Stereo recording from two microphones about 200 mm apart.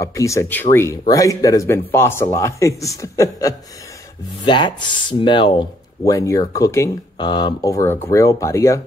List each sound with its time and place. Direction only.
0.0 s speech: 15° left (ahead or behind)